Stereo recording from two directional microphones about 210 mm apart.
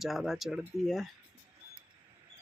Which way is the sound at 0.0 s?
Centre (ahead or behind).